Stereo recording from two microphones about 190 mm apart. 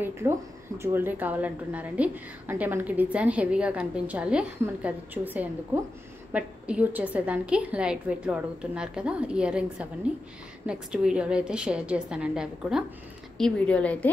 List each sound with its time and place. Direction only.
0.7 s a woman's voice: 10° right (ahead or behind); by 14.1 s 5° left (ahead or behind)